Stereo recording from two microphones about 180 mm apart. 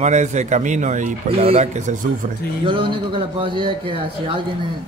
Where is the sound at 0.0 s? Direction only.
40° right (ahead or behind).